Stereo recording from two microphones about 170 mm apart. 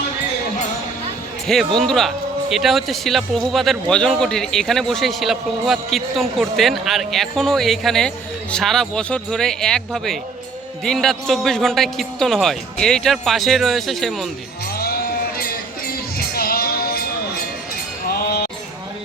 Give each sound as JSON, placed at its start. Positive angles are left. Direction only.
{"t": 1.5, "sound": "speech", "side_deg": 0}
{"t": 16.1, "sound": "music", "side_deg": 60}